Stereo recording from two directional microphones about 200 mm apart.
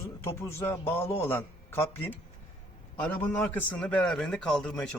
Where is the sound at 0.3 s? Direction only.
10° left (ahead or behind).